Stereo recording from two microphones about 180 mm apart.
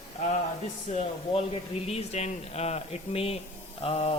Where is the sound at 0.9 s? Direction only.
40° left (ahead or behind).